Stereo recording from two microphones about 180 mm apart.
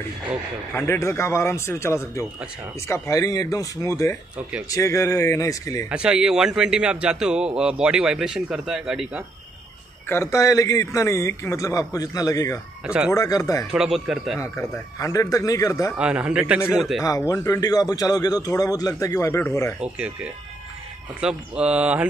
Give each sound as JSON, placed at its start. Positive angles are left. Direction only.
{"t": 0.7, "sound": "a man's voice", "side_deg": 15}
{"t": 5.9, "sound": "a man's voice", "side_deg": -5}
{"t": 10.0, "sound": "a man's voice", "side_deg": 15}
{"t": 12.8, "sound": "a man's voice", "side_deg": -5}
{"t": 13.1, "sound": "a man's voice", "side_deg": 20}
{"t": 13.7, "sound": "a man's voice", "side_deg": 0}
{"t": 14.7, "sound": "a man's voice", "side_deg": 15}
{"t": 16.0, "sound": "a man's voice", "side_deg": -5}
{"t": 17.0, "sound": "a man's voice", "side_deg": 20}
{"t": 19.8, "sound": "a man's voice", "side_deg": -5}